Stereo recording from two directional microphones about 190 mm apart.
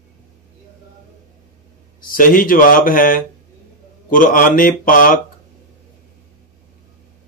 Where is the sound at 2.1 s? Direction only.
45° left (ahead or behind).